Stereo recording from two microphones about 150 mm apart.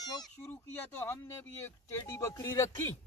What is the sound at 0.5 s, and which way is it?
Speech, 15° left (ahead or behind).